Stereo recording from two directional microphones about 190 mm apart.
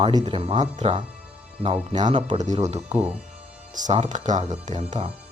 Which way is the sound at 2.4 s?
40° right (ahead or behind).